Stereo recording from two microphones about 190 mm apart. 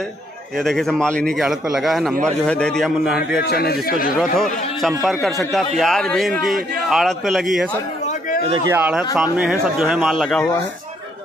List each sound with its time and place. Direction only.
0.6 s speech: centre (ahead or behind)
3.3 s a man's voice: 55° left (ahead or behind)
4.2 s speech: centre (ahead or behind)
8.1 s a sound: 45° left (ahead or behind)
8.7 s speech: 10° right (ahead or behind)